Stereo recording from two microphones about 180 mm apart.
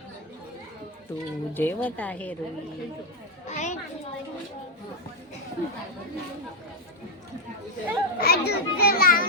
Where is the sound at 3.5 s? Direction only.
40° left (ahead or behind).